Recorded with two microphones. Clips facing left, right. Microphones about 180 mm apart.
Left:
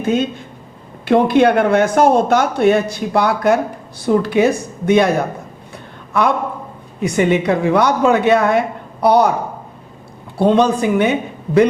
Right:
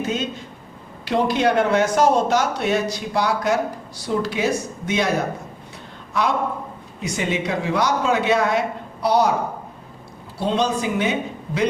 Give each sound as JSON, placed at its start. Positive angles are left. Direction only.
{"t": 0.0, "sound": "speech", "side_deg": 55}
{"t": 7.0, "sound": "speech", "side_deg": 55}
{"t": 10.3, "sound": "speech", "side_deg": 55}